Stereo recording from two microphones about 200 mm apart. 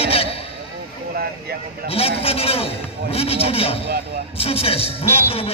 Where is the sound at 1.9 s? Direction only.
30° left (ahead or behind).